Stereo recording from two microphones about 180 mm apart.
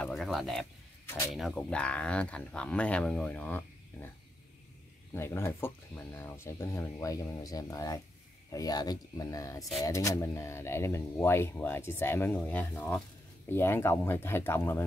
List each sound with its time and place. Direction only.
0.0 s a sound: centre (ahead or behind)
1.0 s speech: 15° left (ahead or behind)
1.3 s speech: centre (ahead or behind)
5.1 s speech: 15° left (ahead or behind)